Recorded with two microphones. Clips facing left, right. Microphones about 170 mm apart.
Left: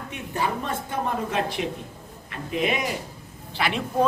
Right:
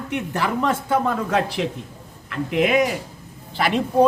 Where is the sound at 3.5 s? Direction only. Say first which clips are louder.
Right 6 dB; 40° right (ahead or behind).